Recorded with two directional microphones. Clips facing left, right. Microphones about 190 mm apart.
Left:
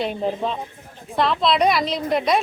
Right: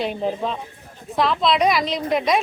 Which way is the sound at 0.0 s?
Centre (ahead or behind).